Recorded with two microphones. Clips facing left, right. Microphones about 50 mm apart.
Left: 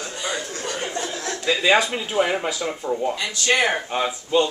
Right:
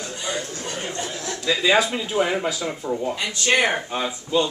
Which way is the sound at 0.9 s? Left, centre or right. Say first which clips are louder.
Left 2 dB; left.